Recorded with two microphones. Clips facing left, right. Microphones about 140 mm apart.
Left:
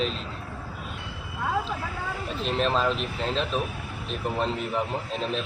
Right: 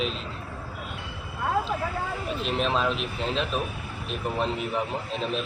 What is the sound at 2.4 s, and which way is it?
Speech, centre (ahead or behind).